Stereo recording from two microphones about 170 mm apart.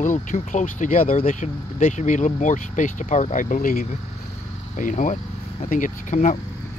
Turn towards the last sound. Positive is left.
turn(degrees=45)  # may be behind; listen again after turning